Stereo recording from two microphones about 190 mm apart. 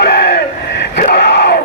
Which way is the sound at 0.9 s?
60° left (ahead or behind).